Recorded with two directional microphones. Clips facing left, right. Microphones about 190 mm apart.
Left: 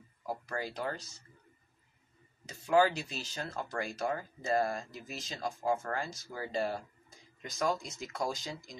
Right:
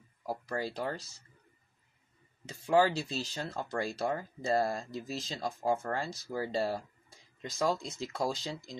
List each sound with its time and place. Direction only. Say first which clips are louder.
0.5 s speech: right 2 dB; 30° right (ahead or behind)
2.4 s speech: even; 30° right (ahead or behind)